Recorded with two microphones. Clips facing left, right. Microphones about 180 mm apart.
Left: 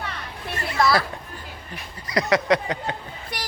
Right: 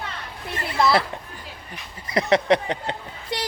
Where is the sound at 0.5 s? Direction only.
25° right (ahead or behind).